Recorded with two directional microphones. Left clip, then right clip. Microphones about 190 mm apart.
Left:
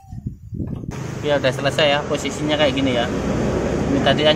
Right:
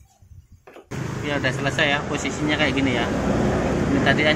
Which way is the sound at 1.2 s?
20° left (ahead or behind).